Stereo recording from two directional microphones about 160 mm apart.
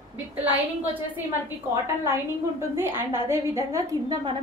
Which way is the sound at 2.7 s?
15° right (ahead or behind).